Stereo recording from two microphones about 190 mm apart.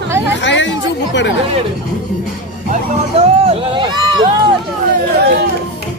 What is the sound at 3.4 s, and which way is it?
Speech, 25° right (ahead or behind).